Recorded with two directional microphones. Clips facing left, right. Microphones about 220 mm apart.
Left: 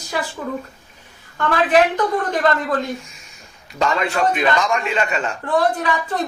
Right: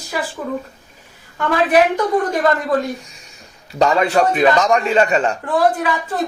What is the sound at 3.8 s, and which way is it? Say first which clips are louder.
A man's voice: right 5 dB; 35° right (ahead or behind).